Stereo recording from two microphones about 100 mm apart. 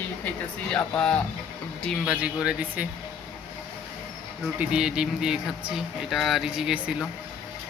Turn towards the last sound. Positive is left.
turn(degrees=-5)  # may be behind; listen again after turning